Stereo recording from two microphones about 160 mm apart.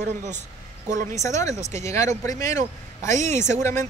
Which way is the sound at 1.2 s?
20° left (ahead or behind).